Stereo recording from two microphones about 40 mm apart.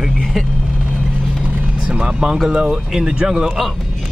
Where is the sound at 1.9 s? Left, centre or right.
Right.